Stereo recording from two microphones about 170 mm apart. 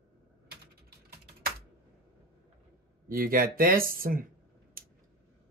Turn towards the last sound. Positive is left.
turn(degrees=-55)  # may be behind; listen again after turning